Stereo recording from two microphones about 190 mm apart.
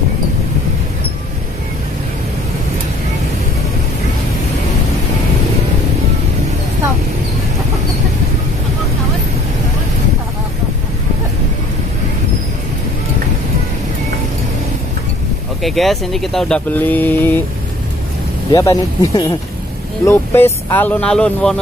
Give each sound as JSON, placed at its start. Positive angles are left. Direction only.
{"t": 15.6, "sound": "speech", "side_deg": 0}
{"t": 18.5, "sound": "speech", "side_deg": 20}